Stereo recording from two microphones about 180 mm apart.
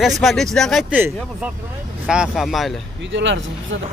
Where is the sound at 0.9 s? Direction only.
10° right (ahead or behind).